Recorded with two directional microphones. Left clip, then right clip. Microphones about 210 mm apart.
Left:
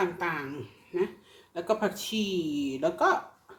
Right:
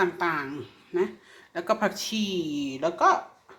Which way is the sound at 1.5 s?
10° right (ahead or behind).